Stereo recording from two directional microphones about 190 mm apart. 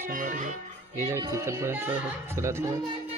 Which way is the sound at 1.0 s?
15° right (ahead or behind).